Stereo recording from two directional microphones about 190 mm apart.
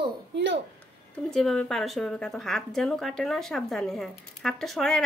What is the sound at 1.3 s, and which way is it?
A woman's voice, centre (ahead or behind).